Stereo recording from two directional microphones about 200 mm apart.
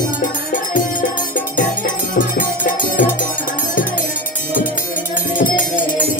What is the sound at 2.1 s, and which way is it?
Music, 40° left (ahead or behind).